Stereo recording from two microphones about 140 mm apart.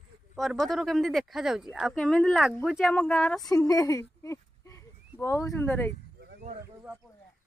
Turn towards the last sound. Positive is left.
turn(degrees=20)  # may be behind; listen again after turning